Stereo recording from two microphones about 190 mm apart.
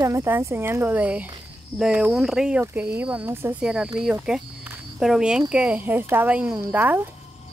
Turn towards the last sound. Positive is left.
turn(degrees=-10)  # may be behind; listen again after turning